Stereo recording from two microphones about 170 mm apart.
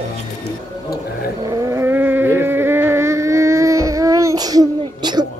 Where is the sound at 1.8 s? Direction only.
10° right (ahead or behind).